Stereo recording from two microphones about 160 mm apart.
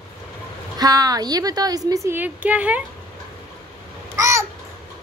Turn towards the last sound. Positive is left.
turn(degrees=-20)  # may be behind; listen again after turning